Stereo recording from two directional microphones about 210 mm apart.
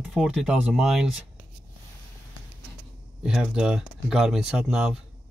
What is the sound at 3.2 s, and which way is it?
Speech, 5° right (ahead or behind).